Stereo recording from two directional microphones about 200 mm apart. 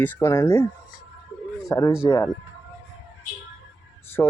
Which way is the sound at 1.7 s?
15° left (ahead or behind).